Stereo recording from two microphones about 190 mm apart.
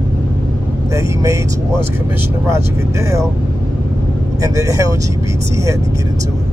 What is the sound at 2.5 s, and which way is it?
Speech, 15° right (ahead or behind).